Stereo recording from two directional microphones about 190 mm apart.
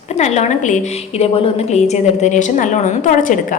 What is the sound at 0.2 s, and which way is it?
A woman's voice, 35° left (ahead or behind).